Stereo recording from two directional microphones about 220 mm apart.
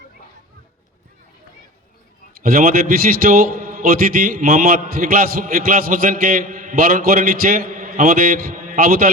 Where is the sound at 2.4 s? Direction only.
40° right (ahead or behind).